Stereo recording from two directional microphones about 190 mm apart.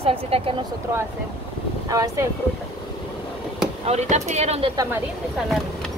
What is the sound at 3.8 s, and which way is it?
Speech, 35° right (ahead or behind).